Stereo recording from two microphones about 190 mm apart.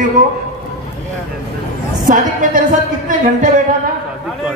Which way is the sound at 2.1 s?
45° right (ahead or behind).